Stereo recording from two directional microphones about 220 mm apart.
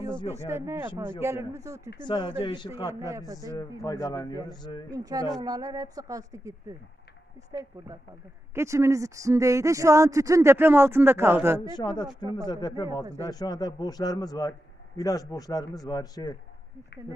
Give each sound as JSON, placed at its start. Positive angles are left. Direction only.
{"t": 0.3, "sound": "speech", "side_deg": -10}
{"t": 2.0, "sound": "speech", "side_deg": 20}
{"t": 2.9, "sound": "speech", "side_deg": -15}
{"t": 3.8, "sound": "a man's voice", "side_deg": 15}
{"t": 4.8, "sound": "speech", "side_deg": -15}
{"t": 8.5, "sound": "speech", "side_deg": -15}
{"t": 11.6, "sound": "speech", "side_deg": 20}
{"t": 13.0, "sound": "speech", "side_deg": -15}
{"t": 13.3, "sound": "a man's voice", "side_deg": 20}